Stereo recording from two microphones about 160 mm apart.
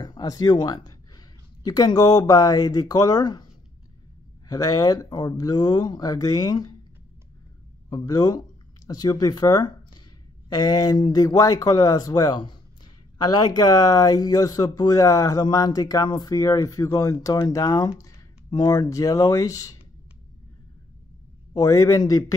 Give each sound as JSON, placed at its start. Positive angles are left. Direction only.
{"t": 0.0, "sound": "speech", "side_deg": 25}
{"t": 4.5, "sound": "speech", "side_deg": 25}
{"t": 7.9, "sound": "speech", "side_deg": 25}
{"t": 21.5, "sound": "speech", "side_deg": 20}